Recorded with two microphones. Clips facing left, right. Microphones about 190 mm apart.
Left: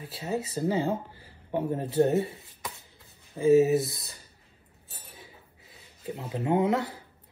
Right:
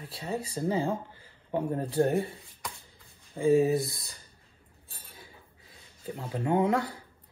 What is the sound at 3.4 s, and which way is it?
Speech, 20° left (ahead or behind).